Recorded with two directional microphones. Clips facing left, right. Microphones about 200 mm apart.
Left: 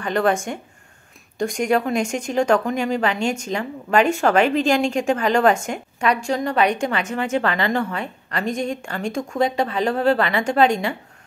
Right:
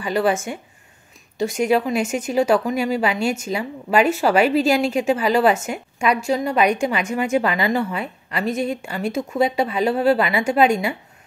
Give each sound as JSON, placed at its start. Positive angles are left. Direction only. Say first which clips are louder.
{"t": 0.0, "sound": "a woman's voice", "louder": "even", "side_deg": -5}